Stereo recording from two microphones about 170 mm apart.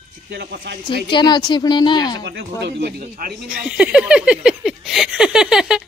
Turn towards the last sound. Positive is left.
turn(degrees=-5)  # may be behind; listen again after turning